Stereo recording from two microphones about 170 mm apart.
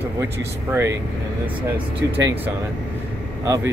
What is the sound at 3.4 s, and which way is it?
Speech, 20° right (ahead or behind).